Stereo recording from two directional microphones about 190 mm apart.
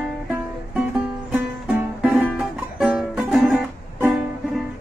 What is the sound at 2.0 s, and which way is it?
Music, 5° right (ahead or behind).